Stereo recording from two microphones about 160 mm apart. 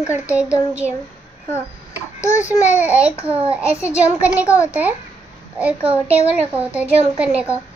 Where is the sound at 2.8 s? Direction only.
10° right (ahead or behind).